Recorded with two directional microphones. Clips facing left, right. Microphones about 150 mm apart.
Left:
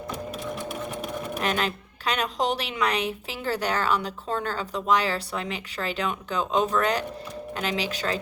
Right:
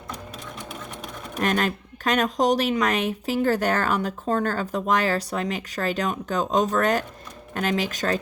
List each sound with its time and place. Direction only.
0.6 s sewing machine: 5° left (ahead or behind)
1.4 s a woman's voice: 45° right (ahead or behind)